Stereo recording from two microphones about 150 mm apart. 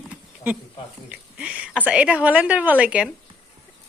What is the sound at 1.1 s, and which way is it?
A woman's voice, 10° right (ahead or behind).